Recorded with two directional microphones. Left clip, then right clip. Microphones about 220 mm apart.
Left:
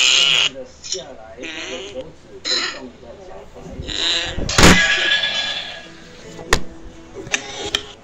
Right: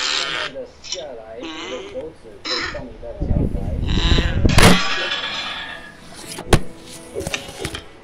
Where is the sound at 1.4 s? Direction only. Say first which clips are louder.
Left 2 dB; centre (ahead or behind).